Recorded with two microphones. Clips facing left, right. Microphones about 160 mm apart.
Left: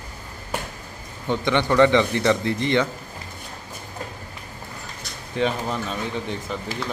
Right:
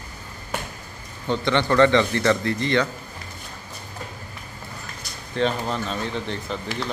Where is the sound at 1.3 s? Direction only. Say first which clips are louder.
Even; 15° left (ahead or behind).